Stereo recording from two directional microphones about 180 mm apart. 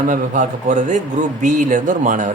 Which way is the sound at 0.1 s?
45° right (ahead or behind).